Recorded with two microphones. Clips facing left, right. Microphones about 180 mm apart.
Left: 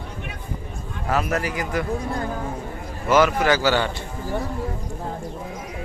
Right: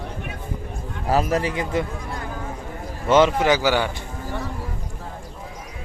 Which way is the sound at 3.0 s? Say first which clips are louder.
Right 1 dB; 25° right (ahead or behind).